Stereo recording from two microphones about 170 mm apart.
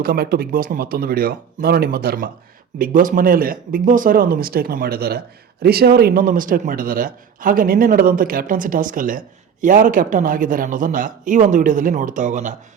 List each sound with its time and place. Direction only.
0.0 s a man's voice: 60° right (ahead or behind); by 12.5 s 45° right (ahead or behind)